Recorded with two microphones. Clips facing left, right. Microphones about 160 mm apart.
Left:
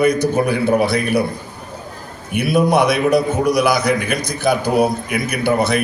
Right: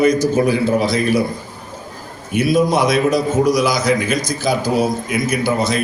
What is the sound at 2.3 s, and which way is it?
A man's voice, 60° left (ahead or behind).